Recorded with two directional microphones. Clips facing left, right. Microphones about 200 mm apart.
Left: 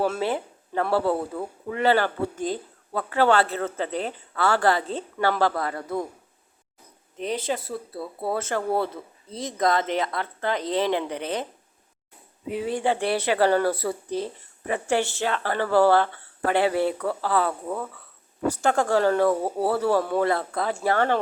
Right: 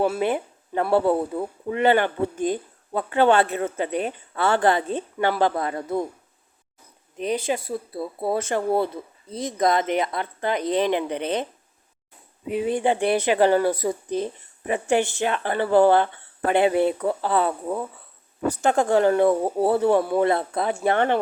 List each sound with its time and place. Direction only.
0.0 s speech: 15° right (ahead or behind)
7.2 s speech: 15° right (ahead or behind)
12.5 s speech: 20° right (ahead or behind)